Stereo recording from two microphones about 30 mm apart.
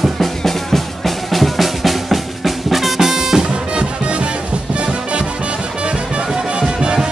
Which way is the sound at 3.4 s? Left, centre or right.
Right.